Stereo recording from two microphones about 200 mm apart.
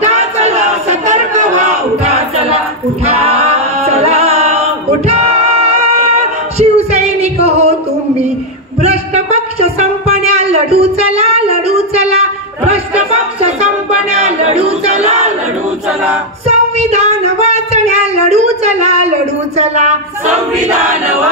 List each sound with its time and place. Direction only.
0.0 s a sound: 35° right (ahead or behind)
3.1 s music: 30° right (ahead or behind)
8.8 s a sound: 35° right (ahead or behind)
10.3 s child singing: 30° right (ahead or behind)
15.0 s battle cry: 35° right (ahead or behind)
16.4 s singing: 35° right (ahead or behind)